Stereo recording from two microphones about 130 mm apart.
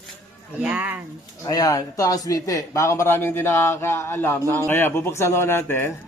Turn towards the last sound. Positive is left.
turn(degrees=20)  # may be behind; listen again after turning